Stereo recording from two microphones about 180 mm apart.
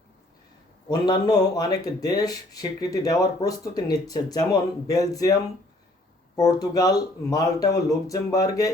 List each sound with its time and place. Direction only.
0.9 s speech: 20° left (ahead or behind)
6.3 s speech: 20° left (ahead or behind)